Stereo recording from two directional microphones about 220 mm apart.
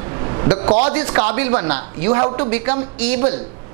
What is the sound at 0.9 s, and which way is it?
Speech, 15° right (ahead or behind).